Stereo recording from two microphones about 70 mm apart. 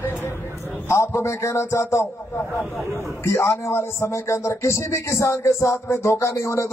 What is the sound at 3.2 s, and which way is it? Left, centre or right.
A man's voice, left.